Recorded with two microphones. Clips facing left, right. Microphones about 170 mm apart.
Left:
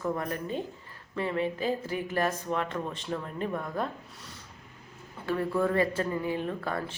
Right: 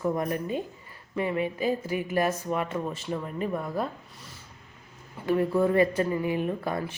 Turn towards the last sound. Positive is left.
turn(degrees=-15)  # may be behind; listen again after turning